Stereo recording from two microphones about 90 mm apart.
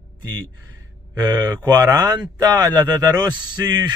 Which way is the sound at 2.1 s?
50° right (ahead or behind).